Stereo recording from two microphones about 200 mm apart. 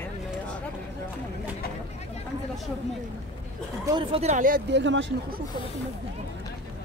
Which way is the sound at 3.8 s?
25° right (ahead or behind).